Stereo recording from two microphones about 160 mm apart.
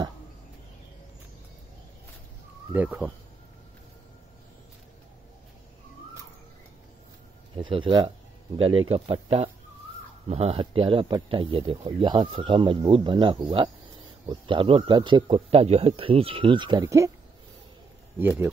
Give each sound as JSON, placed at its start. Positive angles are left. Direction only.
{"t": 2.7, "sound": "speech", "side_deg": -10}
{"t": 7.5, "sound": "speech", "side_deg": -35}
{"t": 16.8, "sound": "speech", "side_deg": -20}